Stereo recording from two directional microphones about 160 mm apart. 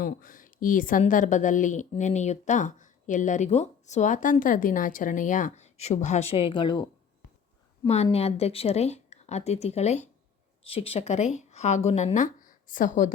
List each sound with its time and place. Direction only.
0.0 s a woman's voice: 60° left (ahead or behind); by 6.8 s 30° left (ahead or behind)
8.1 s a woman's voice: 40° left (ahead or behind)